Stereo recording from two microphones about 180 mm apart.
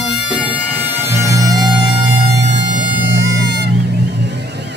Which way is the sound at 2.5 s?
90° right.